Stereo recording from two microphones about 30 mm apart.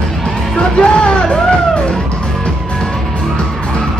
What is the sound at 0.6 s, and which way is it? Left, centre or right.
Music, left.